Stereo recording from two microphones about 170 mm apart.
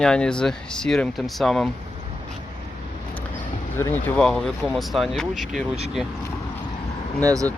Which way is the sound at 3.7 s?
15° left (ahead or behind).